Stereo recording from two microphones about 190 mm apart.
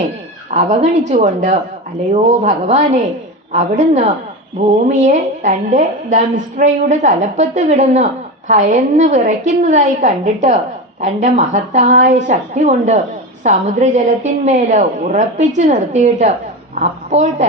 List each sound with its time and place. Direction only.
0.5 s a woman's voice: 35° right (ahead or behind)